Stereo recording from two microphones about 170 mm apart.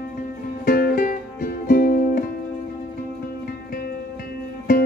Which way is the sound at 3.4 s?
65° left (ahead or behind).